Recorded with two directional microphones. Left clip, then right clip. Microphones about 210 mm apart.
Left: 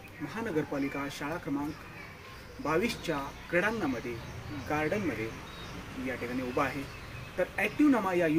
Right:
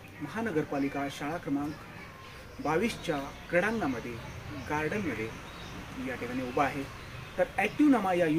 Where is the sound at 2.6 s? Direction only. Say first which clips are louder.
Even; centre (ahead or behind).